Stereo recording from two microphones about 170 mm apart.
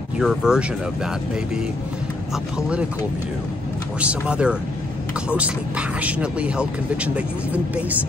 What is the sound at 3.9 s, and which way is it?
Speech, 5° right (ahead or behind).